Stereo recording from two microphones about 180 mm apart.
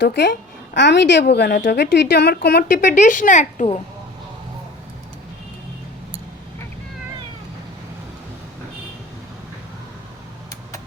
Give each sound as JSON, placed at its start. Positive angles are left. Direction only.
{"t": 0.0, "sound": "a woman's voice", "side_deg": 70}